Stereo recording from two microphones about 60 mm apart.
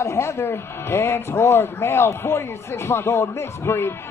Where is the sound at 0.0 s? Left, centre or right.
Left.